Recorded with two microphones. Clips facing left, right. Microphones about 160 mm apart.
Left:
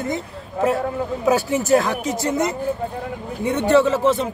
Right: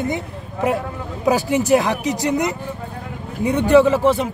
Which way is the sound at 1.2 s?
15° right (ahead or behind).